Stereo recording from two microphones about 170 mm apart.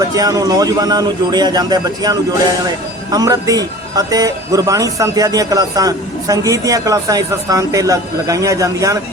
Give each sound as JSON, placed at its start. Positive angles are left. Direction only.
{"t": 0.1, "sound": "speech", "side_deg": -20}